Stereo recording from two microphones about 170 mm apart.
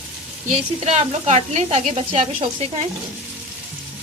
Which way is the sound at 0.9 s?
40° right (ahead or behind).